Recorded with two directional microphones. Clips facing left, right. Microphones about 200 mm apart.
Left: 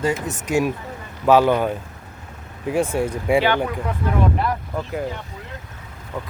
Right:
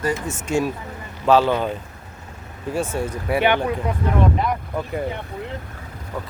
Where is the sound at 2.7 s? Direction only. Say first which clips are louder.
Left 3 dB; 15° left (ahead or behind).